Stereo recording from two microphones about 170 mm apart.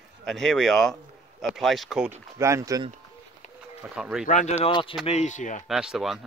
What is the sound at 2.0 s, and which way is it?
Speech, 15° right (ahead or behind).